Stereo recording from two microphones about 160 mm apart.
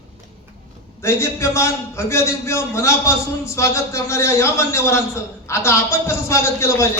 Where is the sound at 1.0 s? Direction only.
15° left (ahead or behind).